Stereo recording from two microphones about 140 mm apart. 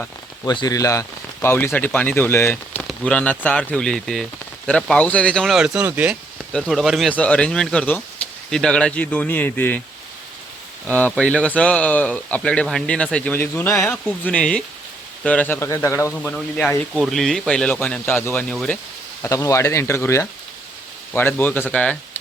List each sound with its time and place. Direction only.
0.4 s speech: 30° left (ahead or behind); by 6.1 s 10° right (ahead or behind)
6.5 s speech: 5° left (ahead or behind)
7.1 s speech: 10° left (ahead or behind)
11.1 s speech: 5° left (ahead or behind)
13.8 s speech: 5° left (ahead or behind)
16.1 s speech: 5° left (ahead or behind)
19.2 s speech: 25° left (ahead or behind)